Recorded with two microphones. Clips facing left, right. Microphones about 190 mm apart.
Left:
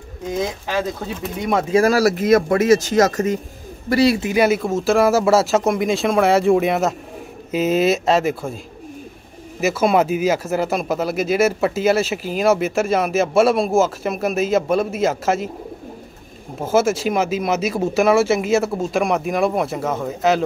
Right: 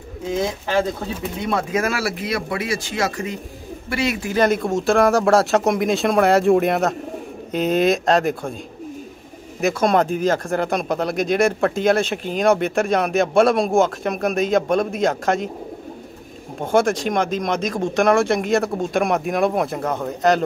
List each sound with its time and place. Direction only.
1.4 s speech: 20° left (ahead or behind)
1.7 s a man's voice: 35° left (ahead or behind)
4.2 s speech: 10° left (ahead or behind)
9.6 s speech: 5° left (ahead or behind)
16.5 s speech: 5° left (ahead or behind)